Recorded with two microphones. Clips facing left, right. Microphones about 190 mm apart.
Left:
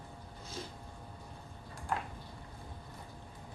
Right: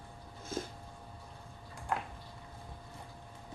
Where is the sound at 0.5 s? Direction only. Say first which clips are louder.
Right 6 dB; 50° right (ahead or behind).